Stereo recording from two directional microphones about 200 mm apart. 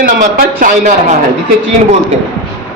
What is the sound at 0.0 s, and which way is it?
A man's voice, 45° right (ahead or behind).